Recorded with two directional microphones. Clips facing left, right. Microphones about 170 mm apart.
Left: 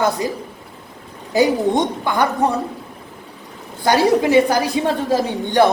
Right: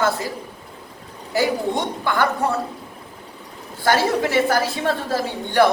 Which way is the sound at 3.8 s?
15° left (ahead or behind).